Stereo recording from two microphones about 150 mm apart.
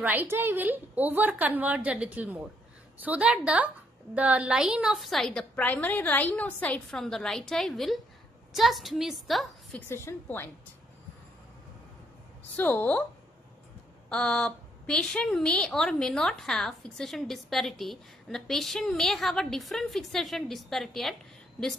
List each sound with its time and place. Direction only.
0.0 s a woman's voice: 10° right (ahead or behind)
9.8 s a woman's voice: 15° left (ahead or behind)
12.5 s a woman's voice: 10° left (ahead or behind)
14.0 s a woman's voice: 5° left (ahead or behind)